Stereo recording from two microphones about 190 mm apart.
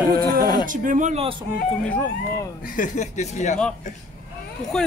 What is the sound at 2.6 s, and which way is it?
Speech, 40° left (ahead or behind).